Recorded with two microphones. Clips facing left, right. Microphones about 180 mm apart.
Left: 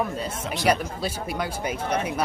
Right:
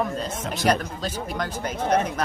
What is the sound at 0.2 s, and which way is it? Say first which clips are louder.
Speech: right 1 dB; 10° left (ahead or behind).